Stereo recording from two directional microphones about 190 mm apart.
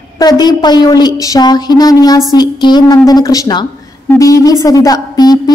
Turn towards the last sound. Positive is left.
turn(degrees=20)  # may be behind; listen again after turning